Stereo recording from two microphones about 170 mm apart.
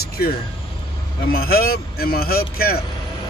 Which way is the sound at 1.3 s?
60° left (ahead or behind).